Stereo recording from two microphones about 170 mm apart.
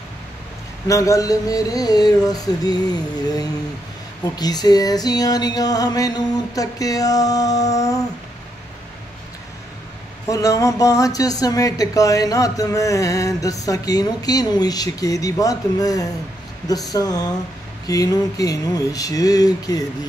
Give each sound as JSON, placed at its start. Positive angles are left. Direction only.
{"t": 0.8, "sound": "speech", "side_deg": 20}
{"t": 10.3, "sound": "speech", "side_deg": 20}